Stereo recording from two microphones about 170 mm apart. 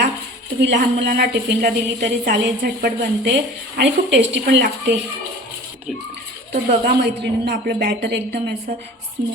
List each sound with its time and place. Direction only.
0.6 s a woman's voice: 80° right
3.8 s a woman's voice: 90° right
6.5 s a woman's voice: 70° right (ahead or behind)